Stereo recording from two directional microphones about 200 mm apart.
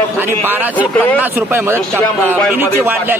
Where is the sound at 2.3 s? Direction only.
10° right (ahead or behind).